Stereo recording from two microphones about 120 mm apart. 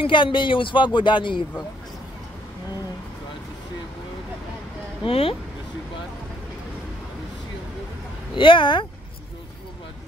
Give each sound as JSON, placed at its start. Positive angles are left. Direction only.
{"t": 0.0, "sound": "speech", "side_deg": 40}
{"t": 5.0, "sound": "speech", "side_deg": 50}
{"t": 8.4, "sound": "speech", "side_deg": 45}